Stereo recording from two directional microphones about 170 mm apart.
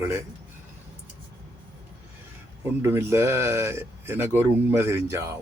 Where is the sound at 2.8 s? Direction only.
15° right (ahead or behind).